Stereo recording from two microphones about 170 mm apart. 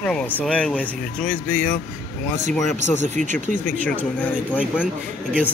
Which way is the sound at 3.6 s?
10° left (ahead or behind).